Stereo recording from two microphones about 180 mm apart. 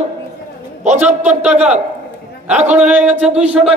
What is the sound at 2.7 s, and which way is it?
Speech, 10° right (ahead or behind).